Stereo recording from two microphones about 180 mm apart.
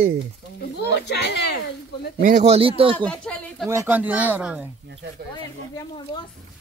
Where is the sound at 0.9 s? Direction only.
65° left (ahead or behind).